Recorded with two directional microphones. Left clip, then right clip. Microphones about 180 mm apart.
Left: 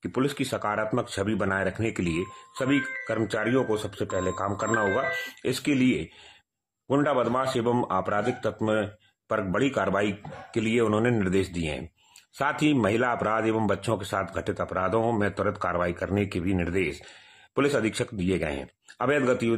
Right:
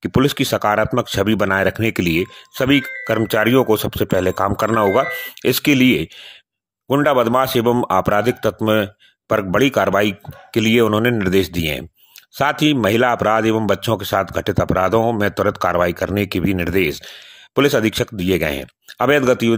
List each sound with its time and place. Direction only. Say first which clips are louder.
0.0 s speech: right 10 dB; 35° right (ahead or behind)